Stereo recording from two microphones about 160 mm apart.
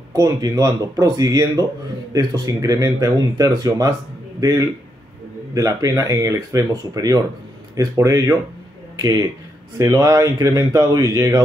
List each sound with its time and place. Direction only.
0.1 s a man's voice: 20° right (ahead or behind)
9.8 s speech: 20° right (ahead or behind)